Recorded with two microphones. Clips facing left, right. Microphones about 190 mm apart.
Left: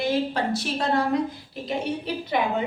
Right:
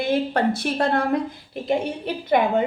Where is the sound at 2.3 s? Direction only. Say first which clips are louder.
Right 4 dB; 55° right (ahead or behind).